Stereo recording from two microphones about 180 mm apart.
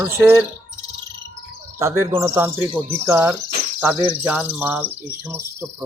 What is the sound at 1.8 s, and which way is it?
Speech, 15° right (ahead or behind).